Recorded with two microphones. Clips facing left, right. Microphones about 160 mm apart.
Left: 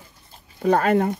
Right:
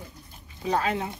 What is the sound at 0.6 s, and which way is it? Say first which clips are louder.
Speech: left 8 dB; 55° left (ahead or behind).